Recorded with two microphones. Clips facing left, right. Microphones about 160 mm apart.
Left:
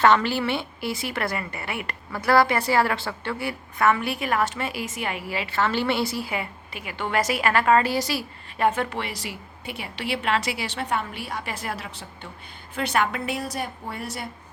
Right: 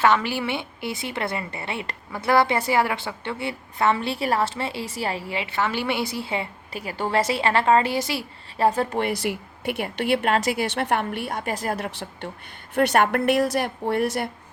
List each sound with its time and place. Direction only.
0.0 s a woman's voice: 10° right (ahead or behind); by 6.5 s 25° right (ahead or behind)
6.7 s a woman's voice: 40° right (ahead or behind); by 8.2 s 20° right (ahead or behind)
8.5 s a woman's voice: 35° right (ahead or behind)
9.0 s speech: 55° right (ahead or behind)
12.7 s a woman's voice: 55° right (ahead or behind)